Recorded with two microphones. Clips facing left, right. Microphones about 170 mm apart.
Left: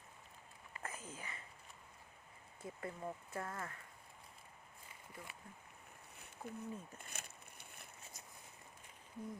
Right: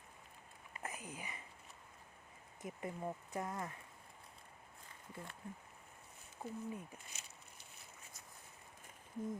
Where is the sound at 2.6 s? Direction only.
15° right (ahead or behind).